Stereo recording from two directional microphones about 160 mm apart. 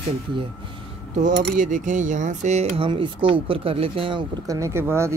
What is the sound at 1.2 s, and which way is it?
Speech, 55° right (ahead or behind).